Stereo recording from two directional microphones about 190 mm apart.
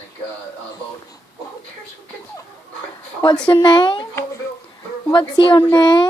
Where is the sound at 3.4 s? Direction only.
25° left (ahead or behind).